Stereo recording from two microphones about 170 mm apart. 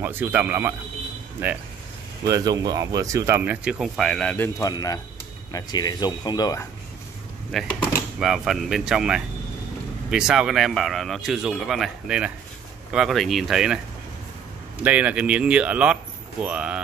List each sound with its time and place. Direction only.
0.0 s speech: 10° right (ahead or behind); by 4.5 s 5° left (ahead or behind)
4.6 s speech: 20° left (ahead or behind)
7.5 s a man's voice: centre (ahead or behind)
14.8 s speech: 10° right (ahead or behind)